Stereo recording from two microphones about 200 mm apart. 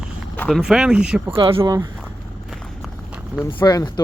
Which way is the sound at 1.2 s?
25° right (ahead or behind).